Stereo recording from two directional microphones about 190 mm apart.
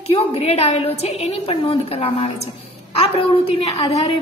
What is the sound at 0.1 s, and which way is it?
A woman's voice, 30° left (ahead or behind).